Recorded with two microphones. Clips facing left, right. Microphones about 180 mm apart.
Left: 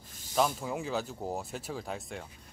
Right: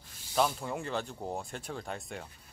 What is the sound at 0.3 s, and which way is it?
Speech, 5° left (ahead or behind).